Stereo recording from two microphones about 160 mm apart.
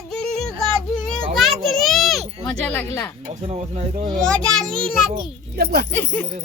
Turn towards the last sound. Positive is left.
turn(degrees=10)  # may be behind; listen again after turning